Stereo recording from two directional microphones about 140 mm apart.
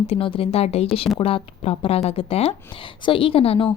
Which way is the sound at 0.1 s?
40° left (ahead or behind).